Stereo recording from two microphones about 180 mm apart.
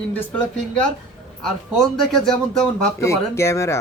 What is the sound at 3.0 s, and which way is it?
Speech, 15° left (ahead or behind).